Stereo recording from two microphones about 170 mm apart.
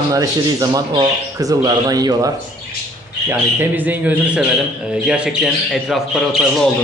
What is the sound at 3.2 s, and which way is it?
A man's voice, 10° right (ahead or behind).